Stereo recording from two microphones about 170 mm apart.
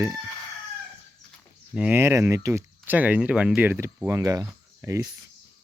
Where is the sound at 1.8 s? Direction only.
10° right (ahead or behind).